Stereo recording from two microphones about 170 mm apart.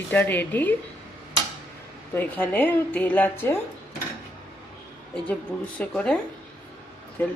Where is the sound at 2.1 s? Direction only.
10° left (ahead or behind).